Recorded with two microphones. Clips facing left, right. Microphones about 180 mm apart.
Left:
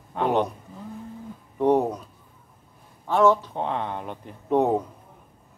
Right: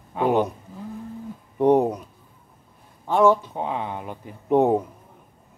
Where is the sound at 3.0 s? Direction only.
15° right (ahead or behind).